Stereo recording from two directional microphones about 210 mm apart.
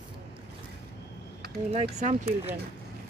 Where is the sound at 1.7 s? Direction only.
30° right (ahead or behind).